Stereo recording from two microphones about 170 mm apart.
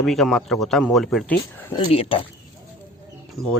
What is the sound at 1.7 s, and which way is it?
Speech, 30° left (ahead or behind).